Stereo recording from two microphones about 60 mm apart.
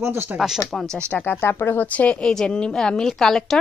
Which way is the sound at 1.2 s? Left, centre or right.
Left.